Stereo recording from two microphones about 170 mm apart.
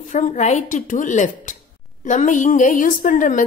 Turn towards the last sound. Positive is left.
turn(degrees=50)  # may be behind; listen again after turning